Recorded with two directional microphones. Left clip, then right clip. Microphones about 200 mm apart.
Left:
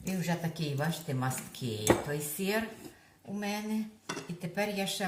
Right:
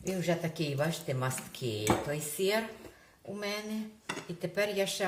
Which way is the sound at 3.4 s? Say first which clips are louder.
Left 1 dB; 25° right (ahead or behind).